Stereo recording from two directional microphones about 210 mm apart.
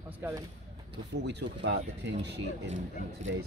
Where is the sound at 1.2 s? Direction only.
55° right (ahead or behind).